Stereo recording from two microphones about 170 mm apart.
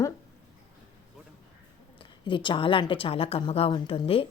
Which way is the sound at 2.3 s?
30° left (ahead or behind).